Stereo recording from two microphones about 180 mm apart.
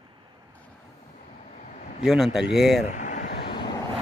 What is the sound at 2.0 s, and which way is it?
Speech, centre (ahead or behind).